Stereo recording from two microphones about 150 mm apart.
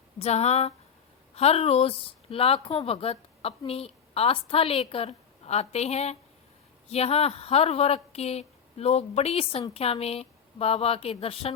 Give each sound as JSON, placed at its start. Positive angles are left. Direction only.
{"t": 0.2, "sound": "a woman's voice", "side_deg": 45}